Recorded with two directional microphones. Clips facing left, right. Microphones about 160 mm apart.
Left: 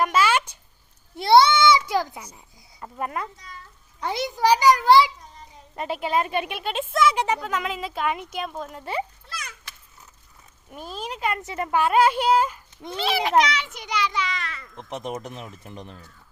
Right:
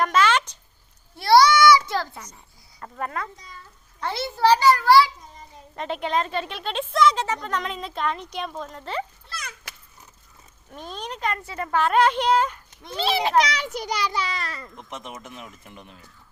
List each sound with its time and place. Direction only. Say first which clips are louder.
0.0 s a sound: even; 5° left (ahead or behind)
1.1 s a sound: even; 20° left (ahead or behind)
1.9 s speech: left 3 dB; 15° left (ahead or behind)
5.7 s speech: left 1 dB; 5° left (ahead or behind)
10.7 s speech: left 1 dB; 5° left (ahead or behind)
11.3 s speech: left 1 dB; 20° left (ahead or behind)
13.0 s a child's voice: even; 30° right (ahead or behind)
14.8 s speech: left 6 dB; 35° left (ahead or behind)